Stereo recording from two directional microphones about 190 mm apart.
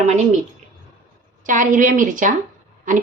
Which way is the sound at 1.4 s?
45° right (ahead or behind).